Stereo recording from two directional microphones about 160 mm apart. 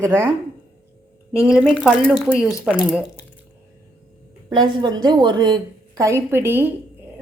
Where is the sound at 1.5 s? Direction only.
5° right (ahead or behind).